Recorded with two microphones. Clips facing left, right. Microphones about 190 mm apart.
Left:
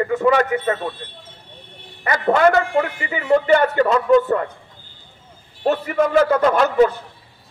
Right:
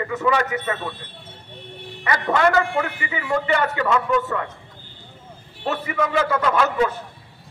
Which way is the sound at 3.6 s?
35° left (ahead or behind).